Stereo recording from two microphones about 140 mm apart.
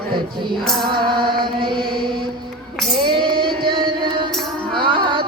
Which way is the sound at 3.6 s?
35° right (ahead or behind).